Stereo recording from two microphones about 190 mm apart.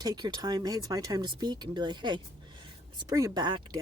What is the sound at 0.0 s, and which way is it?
Speech, 20° right (ahead or behind).